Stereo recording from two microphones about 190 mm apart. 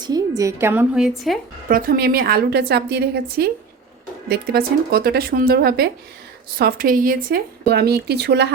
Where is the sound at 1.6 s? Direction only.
50° right (ahead or behind).